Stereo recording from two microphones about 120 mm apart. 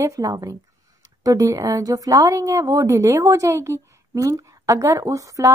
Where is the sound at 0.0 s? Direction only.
30° right (ahead or behind).